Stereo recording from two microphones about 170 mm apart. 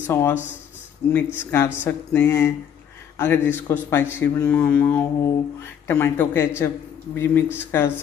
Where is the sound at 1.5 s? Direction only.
15° left (ahead or behind).